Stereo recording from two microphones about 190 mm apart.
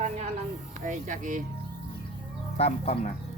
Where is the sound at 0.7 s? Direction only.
40° right (ahead or behind).